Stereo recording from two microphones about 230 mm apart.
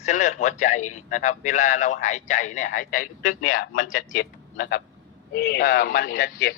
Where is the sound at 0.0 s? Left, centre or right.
Left.